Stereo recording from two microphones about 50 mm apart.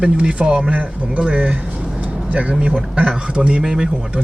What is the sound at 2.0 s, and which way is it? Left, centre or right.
Vehicle, right.